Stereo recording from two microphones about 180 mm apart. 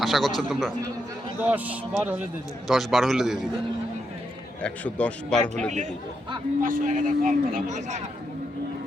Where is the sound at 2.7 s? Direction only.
Centre (ahead or behind).